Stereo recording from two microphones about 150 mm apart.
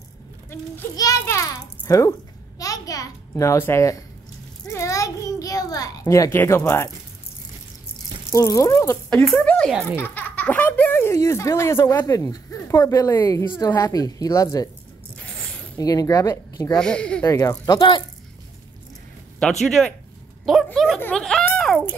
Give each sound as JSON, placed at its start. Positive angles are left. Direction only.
{"t": 0.5, "sound": "speech", "side_deg": 20}
{"t": 1.2, "sound": "babbling", "side_deg": 20}
{"t": 2.6, "sound": "a child's voice", "side_deg": 25}
{"t": 4.6, "sound": "a sound", "side_deg": 20}
{"t": 8.3, "sound": "speech", "side_deg": 20}
{"t": 9.3, "sound": "speech", "side_deg": 5}
{"t": 9.9, "sound": "speech", "side_deg": 15}
{"t": 15.1, "sound": "zipper", "side_deg": 5}
{"t": 15.8, "sound": "speech", "side_deg": 25}
{"t": 16.8, "sound": "speech", "side_deg": 5}
{"t": 17.3, "sound": "speech", "side_deg": 20}
{"t": 19.6, "sound": "speech", "side_deg": 0}